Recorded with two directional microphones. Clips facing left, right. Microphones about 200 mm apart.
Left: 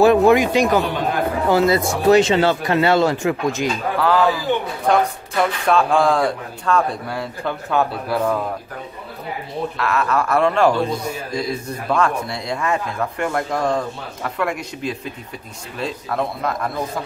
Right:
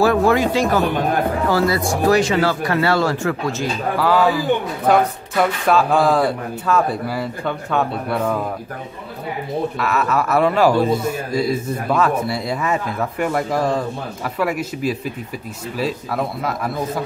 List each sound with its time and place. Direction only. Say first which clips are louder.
0.0 s speech: left 3 dB; 20° left (ahead or behind)
4.0 s a man's voice: right 1 dB; centre (ahead or behind)
9.8 s a man's voice: left 2 dB; 5° right (ahead or behind)